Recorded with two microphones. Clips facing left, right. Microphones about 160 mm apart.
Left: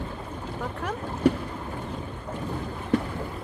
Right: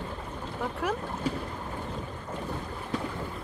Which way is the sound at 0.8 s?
10° right (ahead or behind).